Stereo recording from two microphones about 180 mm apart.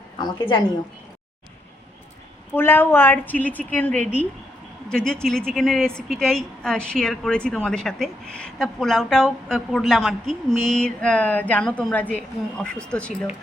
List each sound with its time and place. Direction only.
0.2 s a woman's voice: 25° left (ahead or behind)
2.6 s a woman's voice: 10° left (ahead or behind)